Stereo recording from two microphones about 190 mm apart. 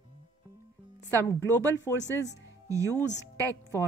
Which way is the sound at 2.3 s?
15° right (ahead or behind).